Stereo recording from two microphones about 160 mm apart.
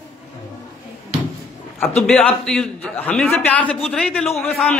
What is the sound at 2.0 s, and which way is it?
A man's voice, 5° left (ahead or behind).